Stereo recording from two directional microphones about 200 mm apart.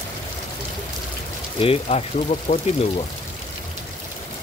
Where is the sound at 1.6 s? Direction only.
30° left (ahead or behind).